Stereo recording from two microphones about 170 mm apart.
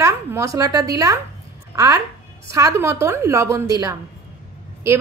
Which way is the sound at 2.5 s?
20° right (ahead or behind).